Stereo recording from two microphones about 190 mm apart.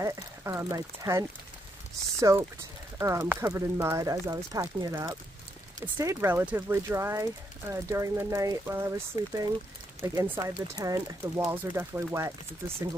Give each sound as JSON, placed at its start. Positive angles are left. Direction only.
{"t": 0.0, "sound": "speech", "side_deg": -15}